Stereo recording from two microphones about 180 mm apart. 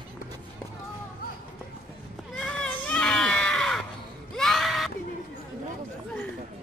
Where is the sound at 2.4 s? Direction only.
5° left (ahead or behind).